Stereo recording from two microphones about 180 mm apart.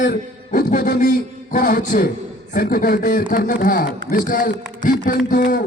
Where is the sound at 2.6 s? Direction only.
60° left (ahead or behind).